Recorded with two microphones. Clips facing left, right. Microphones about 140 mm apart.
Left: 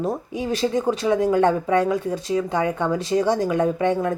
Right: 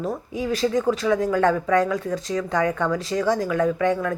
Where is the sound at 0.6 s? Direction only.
30° left (ahead or behind).